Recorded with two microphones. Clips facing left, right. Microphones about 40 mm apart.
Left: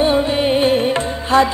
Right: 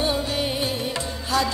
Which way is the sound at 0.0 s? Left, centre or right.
Left.